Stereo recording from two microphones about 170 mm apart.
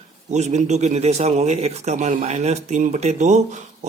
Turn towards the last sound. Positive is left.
turn(degrees=-45)  # may be behind; listen again after turning